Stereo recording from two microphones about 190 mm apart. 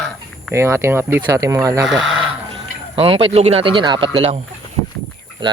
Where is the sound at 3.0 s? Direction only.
30° right (ahead or behind).